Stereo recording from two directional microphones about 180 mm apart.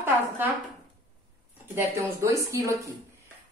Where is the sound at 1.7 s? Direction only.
15° right (ahead or behind).